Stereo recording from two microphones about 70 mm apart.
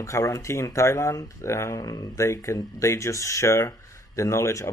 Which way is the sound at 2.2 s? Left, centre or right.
Left.